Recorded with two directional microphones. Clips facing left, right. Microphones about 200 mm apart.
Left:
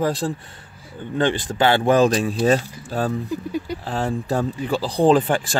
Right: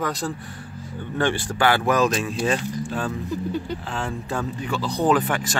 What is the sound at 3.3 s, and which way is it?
Speech, 10° left (ahead or behind).